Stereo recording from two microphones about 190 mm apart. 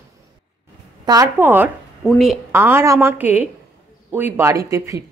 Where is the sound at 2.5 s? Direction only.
10° right (ahead or behind).